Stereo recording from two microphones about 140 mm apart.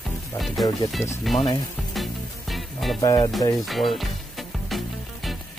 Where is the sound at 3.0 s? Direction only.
25° left (ahead or behind).